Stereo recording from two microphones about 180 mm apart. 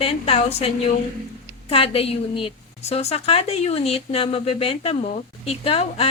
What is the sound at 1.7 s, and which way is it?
A woman's voice, 30° left (ahead or behind).